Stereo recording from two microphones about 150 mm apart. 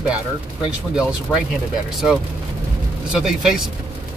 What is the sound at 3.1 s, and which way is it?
Speech, 5° right (ahead or behind).